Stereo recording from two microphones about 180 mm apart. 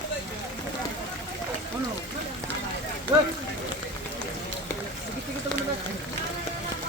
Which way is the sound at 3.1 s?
15° right (ahead or behind).